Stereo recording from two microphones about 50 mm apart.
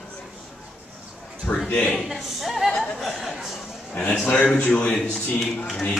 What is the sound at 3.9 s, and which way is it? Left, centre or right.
A man's voice, centre.